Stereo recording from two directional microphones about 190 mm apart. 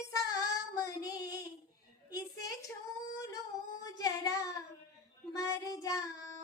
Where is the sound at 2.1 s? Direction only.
20° left (ahead or behind).